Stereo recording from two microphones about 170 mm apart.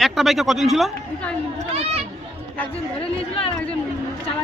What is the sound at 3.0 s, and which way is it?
Speech, 35° left (ahead or behind).